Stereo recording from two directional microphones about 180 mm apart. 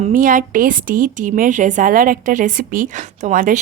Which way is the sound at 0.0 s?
50° right (ahead or behind).